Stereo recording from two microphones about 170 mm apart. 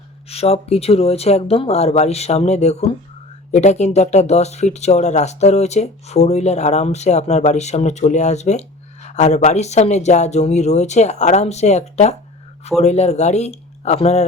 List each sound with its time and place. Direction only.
0.3 s speech: 35° left (ahead or behind)